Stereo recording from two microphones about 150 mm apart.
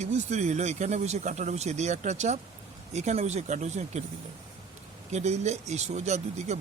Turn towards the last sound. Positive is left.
turn(degrees=-50)  # may be behind; listen again after turning